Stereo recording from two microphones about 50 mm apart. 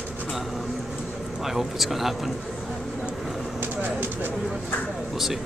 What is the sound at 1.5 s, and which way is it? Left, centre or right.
Speech, centre.